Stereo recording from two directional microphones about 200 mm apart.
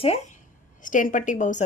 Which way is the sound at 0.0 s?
30° left (ahead or behind).